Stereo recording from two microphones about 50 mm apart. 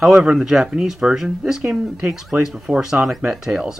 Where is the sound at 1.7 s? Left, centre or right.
Right.